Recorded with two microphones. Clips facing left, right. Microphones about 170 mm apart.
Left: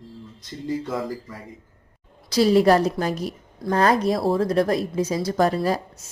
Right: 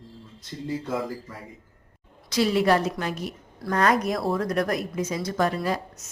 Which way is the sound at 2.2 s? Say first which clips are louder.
Left 5 dB; 35° left (ahead or behind).